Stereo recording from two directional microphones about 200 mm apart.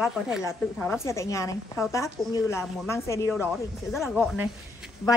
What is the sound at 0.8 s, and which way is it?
Speech, 15° left (ahead or behind).